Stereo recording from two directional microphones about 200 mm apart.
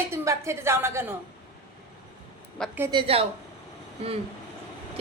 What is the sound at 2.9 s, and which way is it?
Speech, 25° right (ahead or behind).